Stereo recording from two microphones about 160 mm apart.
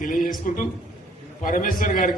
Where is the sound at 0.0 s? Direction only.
60° left (ahead or behind).